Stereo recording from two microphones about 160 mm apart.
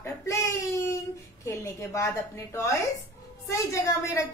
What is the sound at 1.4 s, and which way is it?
A woman's voice, 20° left (ahead or behind).